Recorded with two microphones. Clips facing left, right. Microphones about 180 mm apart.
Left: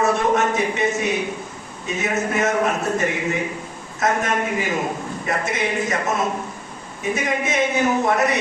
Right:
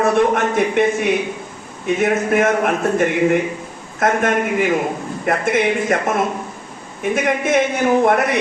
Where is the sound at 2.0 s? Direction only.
55° right (ahead or behind).